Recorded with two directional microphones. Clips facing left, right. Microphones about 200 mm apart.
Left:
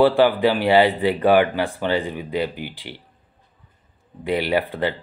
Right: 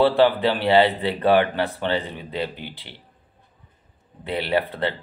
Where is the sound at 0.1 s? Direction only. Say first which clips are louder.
Left 1 dB; 10° left (ahead or behind).